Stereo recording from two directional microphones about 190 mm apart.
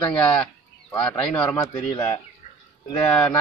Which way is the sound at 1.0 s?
5° left (ahead or behind).